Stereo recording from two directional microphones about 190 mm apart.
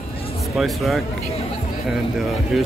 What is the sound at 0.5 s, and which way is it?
Speech, centre (ahead or behind).